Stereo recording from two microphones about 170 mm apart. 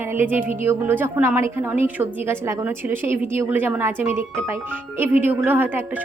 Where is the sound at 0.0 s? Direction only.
15° right (ahead or behind).